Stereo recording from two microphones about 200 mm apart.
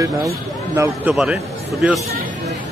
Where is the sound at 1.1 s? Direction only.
5° right (ahead or behind).